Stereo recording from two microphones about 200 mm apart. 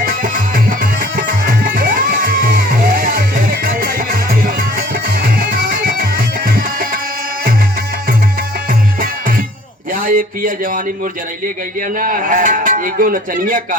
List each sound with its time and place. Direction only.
0.0 s music: 45° right (ahead or behind)
9.9 s a sound: 45° right (ahead or behind)
11.9 s a man's voice: 45° right (ahead or behind)